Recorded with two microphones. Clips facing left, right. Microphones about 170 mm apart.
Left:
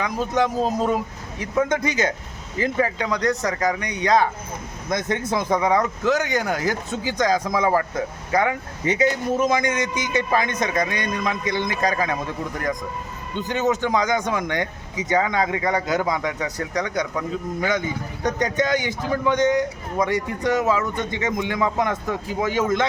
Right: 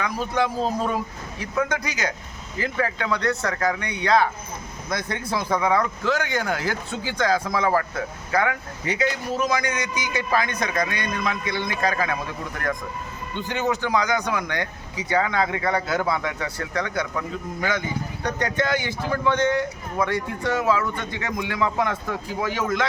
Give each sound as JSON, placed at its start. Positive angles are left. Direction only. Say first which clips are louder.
{"t": 0.0, "sound": "a man's voice", "louder": "left 2 dB", "side_deg": 20}
{"t": 9.0, "sound": "speech", "louder": "left 4 dB", "side_deg": 50}
{"t": 9.5, "sound": "a man's voice", "louder": "left 3 dB", "side_deg": 20}
{"t": 13.5, "sound": "speech", "louder": "left 2 dB", "side_deg": 20}